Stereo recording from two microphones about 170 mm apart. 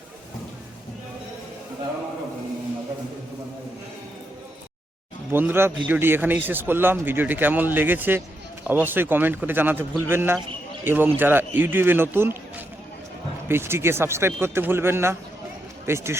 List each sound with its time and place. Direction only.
5.3 s speech: 10° right (ahead or behind)